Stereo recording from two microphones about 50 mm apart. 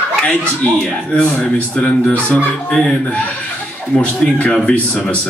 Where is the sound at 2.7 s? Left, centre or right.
Centre.